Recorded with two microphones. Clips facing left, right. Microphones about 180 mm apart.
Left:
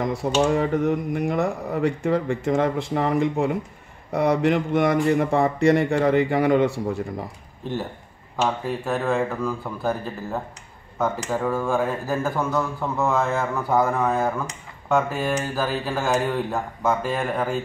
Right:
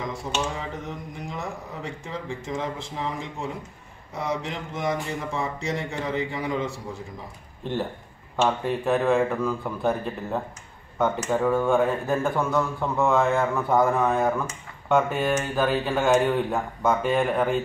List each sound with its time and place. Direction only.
0.0 s speech: 60° left (ahead or behind)
8.6 s speech: centre (ahead or behind)